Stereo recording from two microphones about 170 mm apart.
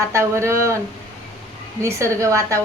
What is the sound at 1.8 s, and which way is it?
Speech, 15° right (ahead or behind).